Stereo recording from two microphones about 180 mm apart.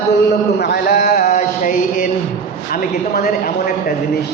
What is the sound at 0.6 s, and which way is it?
Mantra, 60° left (ahead or behind).